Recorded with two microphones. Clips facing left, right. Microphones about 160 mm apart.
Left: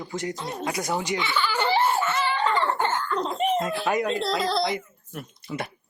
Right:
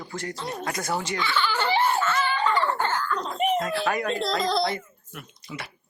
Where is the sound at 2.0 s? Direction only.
25° left (ahead or behind).